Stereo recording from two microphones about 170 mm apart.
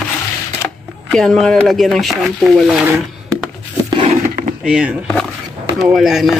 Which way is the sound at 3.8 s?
30° right (ahead or behind).